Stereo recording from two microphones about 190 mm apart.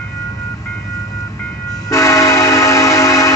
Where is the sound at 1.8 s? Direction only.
15° left (ahead or behind).